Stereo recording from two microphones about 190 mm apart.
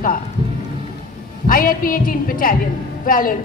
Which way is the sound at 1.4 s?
45° left (ahead or behind).